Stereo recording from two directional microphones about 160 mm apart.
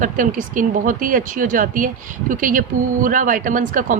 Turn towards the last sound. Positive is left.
turn(degrees=-55)  # may be behind; listen again after turning